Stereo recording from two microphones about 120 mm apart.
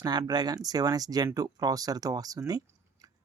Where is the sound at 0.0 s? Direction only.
35° right (ahead or behind).